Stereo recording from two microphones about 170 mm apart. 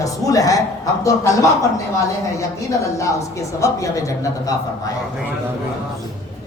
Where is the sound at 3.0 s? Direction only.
20° left (ahead or behind).